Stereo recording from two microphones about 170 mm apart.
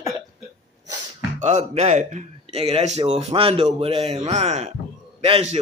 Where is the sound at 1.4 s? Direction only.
40° right (ahead or behind).